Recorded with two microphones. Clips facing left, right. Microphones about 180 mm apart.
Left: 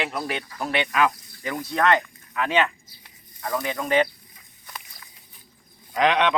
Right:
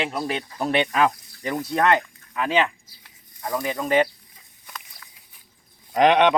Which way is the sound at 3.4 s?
20° right (ahead or behind).